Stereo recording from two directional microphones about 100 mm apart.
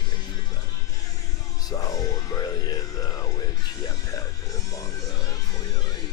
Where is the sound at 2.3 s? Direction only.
40° left (ahead or behind).